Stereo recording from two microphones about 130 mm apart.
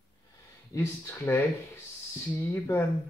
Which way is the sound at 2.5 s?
20° left (ahead or behind).